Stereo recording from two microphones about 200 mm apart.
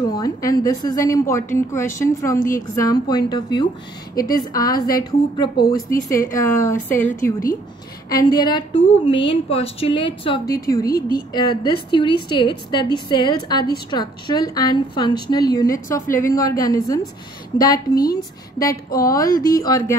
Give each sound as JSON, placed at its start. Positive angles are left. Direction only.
{"t": 0.1, "sound": "a woman's voice", "side_deg": 15}